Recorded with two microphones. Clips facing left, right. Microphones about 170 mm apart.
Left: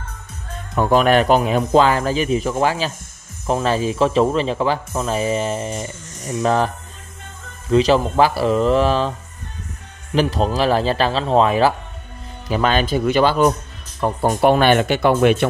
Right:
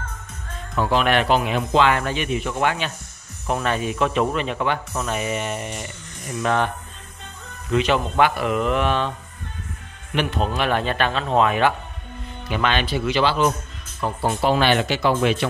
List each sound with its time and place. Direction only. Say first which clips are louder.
0.7 s speech: left 5 dB; 45° left (ahead or behind)
7.7 s speech: left 5 dB; 35° left (ahead or behind)
10.1 s speech: left 5 dB; 35° left (ahead or behind)
14.4 s speech: left 5 dB; 55° left (ahead or behind)